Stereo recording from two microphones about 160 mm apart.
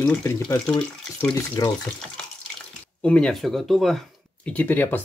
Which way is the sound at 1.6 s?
25° left (ahead or behind).